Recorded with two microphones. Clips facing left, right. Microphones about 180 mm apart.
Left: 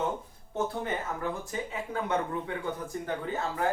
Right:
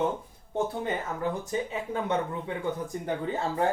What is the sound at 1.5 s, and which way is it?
Speech, 20° right (ahead or behind).